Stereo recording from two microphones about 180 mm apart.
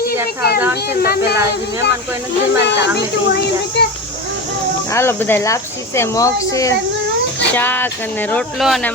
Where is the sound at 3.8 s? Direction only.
65° left (ahead or behind).